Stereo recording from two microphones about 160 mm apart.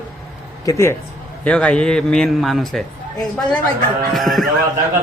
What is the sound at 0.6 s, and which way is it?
Speech, 20° left (ahead or behind).